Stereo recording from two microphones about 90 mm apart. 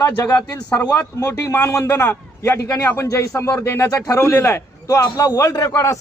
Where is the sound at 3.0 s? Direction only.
35° left (ahead or behind).